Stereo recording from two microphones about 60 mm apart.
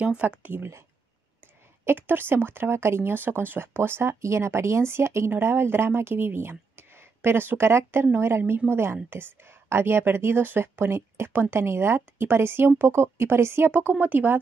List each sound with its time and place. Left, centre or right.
0.4 s speech: right
1.9 s speech: right
13.7 s speech: right